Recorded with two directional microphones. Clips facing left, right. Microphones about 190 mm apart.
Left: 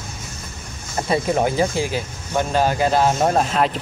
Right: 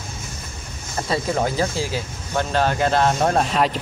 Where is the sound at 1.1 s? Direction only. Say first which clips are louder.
Left 3 dB; 20° left (ahead or behind).